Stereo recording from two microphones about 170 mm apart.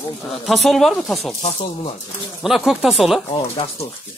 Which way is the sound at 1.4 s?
40° left (ahead or behind).